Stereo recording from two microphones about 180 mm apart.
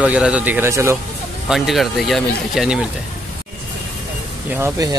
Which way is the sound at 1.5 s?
Centre (ahead or behind).